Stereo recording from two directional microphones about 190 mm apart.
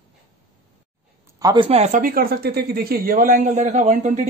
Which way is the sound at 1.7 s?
35° right (ahead or behind).